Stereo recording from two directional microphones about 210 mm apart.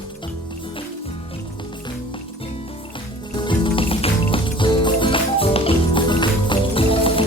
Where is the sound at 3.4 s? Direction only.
25° left (ahead or behind).